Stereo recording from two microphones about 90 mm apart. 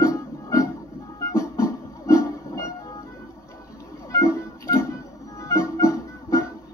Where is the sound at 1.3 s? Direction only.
35° left (ahead or behind).